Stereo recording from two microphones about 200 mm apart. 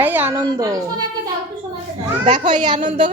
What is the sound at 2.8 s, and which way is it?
Speech, 40° right (ahead or behind).